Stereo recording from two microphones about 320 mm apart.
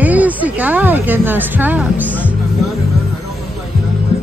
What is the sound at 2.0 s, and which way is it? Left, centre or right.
Music, centre.